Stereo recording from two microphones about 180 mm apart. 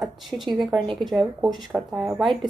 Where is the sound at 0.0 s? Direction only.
Centre (ahead or behind).